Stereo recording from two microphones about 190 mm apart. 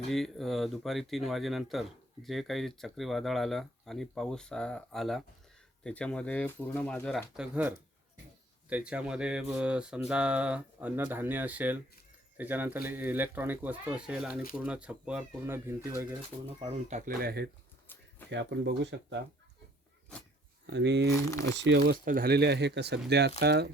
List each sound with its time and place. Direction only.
0.1 s speech: centre (ahead or behind)
8.7 s speech: 5° right (ahead or behind)
16.9 s speech: 50° right (ahead or behind)
18.3 s speech: 70° right (ahead or behind)
20.7 s speech: 70° right (ahead or behind)
22.0 s speech: 50° right (ahead or behind)